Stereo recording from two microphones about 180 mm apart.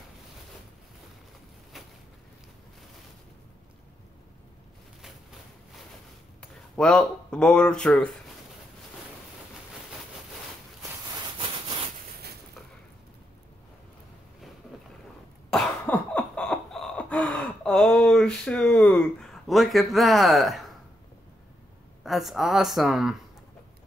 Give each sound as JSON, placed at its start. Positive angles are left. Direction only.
{"t": 6.4, "sound": "speech", "side_deg": 5}
{"t": 11.3, "sound": "sawing", "side_deg": -25}
{"t": 15.5, "sound": "cough", "side_deg": 5}
{"t": 22.0, "sound": "speech", "side_deg": 0}